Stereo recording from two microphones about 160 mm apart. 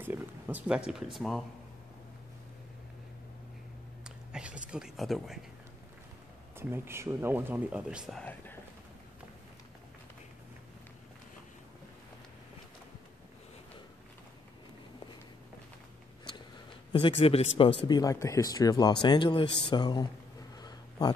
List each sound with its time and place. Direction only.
0.0 s speech: 10° right (ahead or behind)
4.0 s a sound: 5° right (ahead or behind)
6.7 s speech: 15° right (ahead or behind)
8.2 s whispering: 10° left (ahead or behind)
16.9 s speech: 35° left (ahead or behind)
17.8 s speech: 25° left (ahead or behind)
20.5 s a sound: 25° left (ahead or behind)